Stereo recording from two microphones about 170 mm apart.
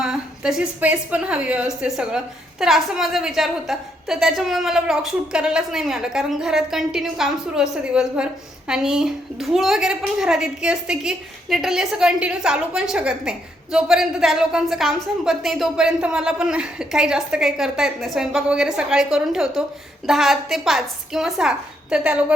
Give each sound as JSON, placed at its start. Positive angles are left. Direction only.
{"t": 0.0, "sound": "a woman's voice", "side_deg": -5}